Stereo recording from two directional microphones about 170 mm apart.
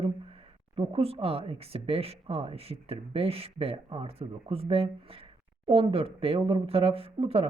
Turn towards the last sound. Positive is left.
turn(degrees=-35)  # may be behind; listen again after turning